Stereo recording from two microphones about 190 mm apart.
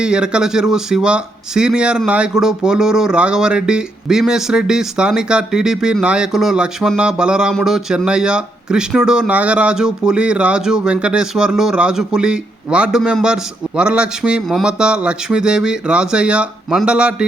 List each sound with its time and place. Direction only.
0.0 s speech: 5° right (ahead or behind)